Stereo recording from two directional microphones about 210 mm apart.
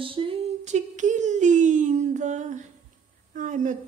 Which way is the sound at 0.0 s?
25° right (ahead or behind).